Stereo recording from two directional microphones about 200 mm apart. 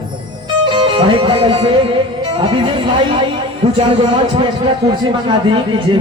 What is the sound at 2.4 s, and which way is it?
Speech, 25° right (ahead or behind).